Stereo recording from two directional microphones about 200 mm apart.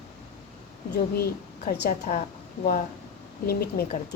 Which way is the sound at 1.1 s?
50° left (ahead or behind).